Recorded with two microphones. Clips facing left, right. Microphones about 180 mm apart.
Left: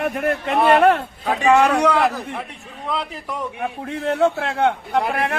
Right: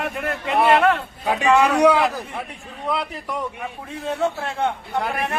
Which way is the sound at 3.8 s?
65° left (ahead or behind).